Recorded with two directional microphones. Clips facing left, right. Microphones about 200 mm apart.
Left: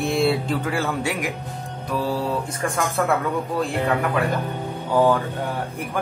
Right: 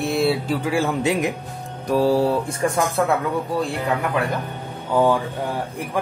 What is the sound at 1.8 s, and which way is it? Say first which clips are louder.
Mantra: right 7 dB; 45° right (ahead or behind).